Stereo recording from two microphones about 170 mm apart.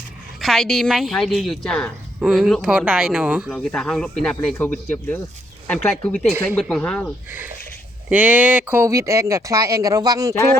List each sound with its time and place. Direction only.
0.4 s a woman's voice: centre (ahead or behind)
3.5 s a woman's voice: 5° left (ahead or behind)
7.3 s speech: 10° right (ahead or behind)